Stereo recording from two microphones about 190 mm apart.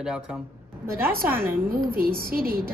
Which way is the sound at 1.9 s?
50° right (ahead or behind).